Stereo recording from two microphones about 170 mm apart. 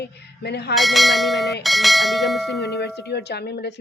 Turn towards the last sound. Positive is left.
turn(degrees=80)